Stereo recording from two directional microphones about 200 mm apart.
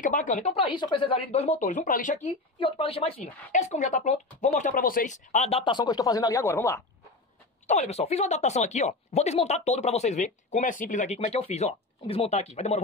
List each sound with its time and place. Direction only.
0.0 s speech: 40° left (ahead or behind)
2.2 s speech: 25° left (ahead or behind)
7.6 s speech: 35° left (ahead or behind)